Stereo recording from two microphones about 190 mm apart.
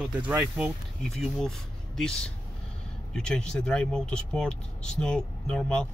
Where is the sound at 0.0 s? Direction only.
10° right (ahead or behind).